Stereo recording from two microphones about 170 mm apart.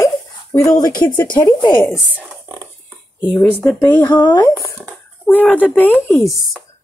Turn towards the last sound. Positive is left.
turn(degrees=0)  # may be behind; listen again after turning